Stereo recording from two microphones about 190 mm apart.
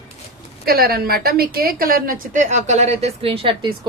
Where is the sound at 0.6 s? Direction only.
55° right (ahead or behind).